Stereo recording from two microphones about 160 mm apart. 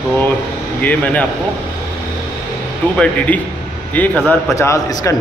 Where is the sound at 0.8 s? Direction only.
10° left (ahead or behind).